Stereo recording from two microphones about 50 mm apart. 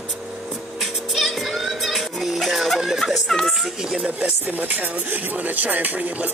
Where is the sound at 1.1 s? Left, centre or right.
Centre.